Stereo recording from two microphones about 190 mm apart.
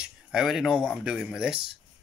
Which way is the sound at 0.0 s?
5° right (ahead or behind).